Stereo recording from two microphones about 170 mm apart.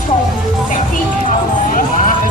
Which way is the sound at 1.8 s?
50° left (ahead or behind).